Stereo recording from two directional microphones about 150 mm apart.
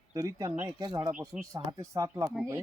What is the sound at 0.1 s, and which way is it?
Speech, 25° right (ahead or behind).